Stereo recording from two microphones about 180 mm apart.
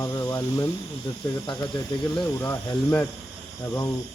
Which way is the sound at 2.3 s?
15° left (ahead or behind).